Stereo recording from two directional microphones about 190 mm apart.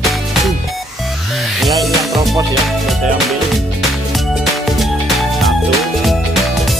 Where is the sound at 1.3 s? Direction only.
Centre (ahead or behind).